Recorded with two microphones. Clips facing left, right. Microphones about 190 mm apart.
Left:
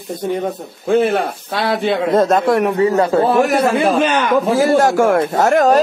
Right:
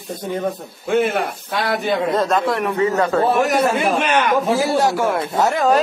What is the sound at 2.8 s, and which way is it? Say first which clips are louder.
A man's voice: left 3 dB; 30° left (ahead or behind).